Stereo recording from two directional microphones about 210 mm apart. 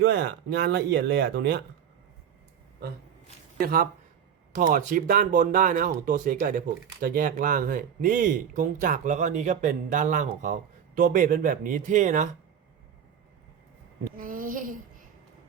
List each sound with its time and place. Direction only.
0.0 s speech: 50° right (ahead or behind)
3.6 s speech: 45° right (ahead or behind)
14.2 s speech: 40° right (ahead or behind)